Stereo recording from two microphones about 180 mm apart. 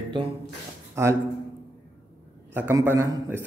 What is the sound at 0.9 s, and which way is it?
Speech, 15° right (ahead or behind).